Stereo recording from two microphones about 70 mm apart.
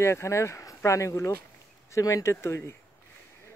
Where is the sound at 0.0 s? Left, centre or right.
Left.